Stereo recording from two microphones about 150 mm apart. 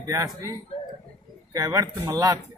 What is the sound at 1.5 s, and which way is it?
Speech, 20° right (ahead or behind).